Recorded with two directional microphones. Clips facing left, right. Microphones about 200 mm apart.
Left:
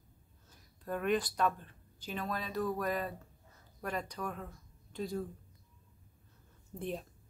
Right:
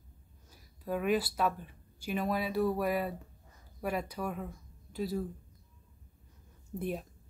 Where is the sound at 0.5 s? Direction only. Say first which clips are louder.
Right 3 dB; 5° right (ahead or behind).